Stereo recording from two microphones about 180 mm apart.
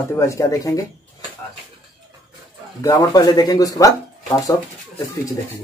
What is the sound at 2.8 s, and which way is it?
Speech, 20° left (ahead or behind).